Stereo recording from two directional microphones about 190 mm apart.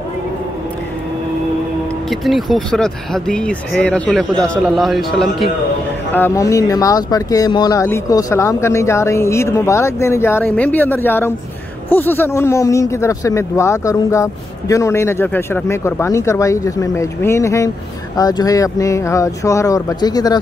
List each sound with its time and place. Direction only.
2.0 s speech: centre (ahead or behind)
6.1 s speech: 15° left (ahead or behind)